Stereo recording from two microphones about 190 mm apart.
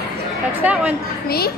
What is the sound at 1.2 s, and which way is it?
Speech, 55° left (ahead or behind).